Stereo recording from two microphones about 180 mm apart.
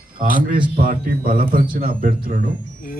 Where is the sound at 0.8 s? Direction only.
55° right (ahead or behind).